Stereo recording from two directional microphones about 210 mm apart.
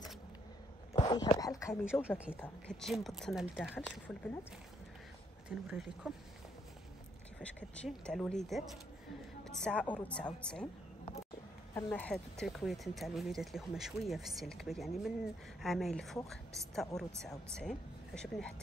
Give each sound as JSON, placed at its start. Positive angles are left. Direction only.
{"t": 0.9, "sound": "a sound", "side_deg": 20}
{"t": 2.0, "sound": "speech", "side_deg": -5}
{"t": 2.3, "sound": "speech", "side_deg": 5}
{"t": 5.7, "sound": "speech", "side_deg": 0}
{"t": 7.3, "sound": "a woman's voice", "side_deg": 5}
{"t": 11.7, "sound": "speech", "side_deg": 5}